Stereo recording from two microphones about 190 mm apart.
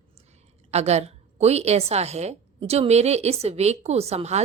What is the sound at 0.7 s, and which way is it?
A woman's voice, 35° right (ahead or behind).